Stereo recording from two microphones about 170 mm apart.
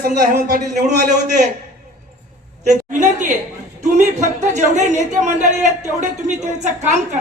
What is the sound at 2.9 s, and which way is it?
A woman's voice, 45° right (ahead or behind).